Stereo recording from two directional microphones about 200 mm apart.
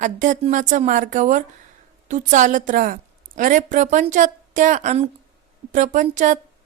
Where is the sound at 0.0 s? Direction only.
40° right (ahead or behind).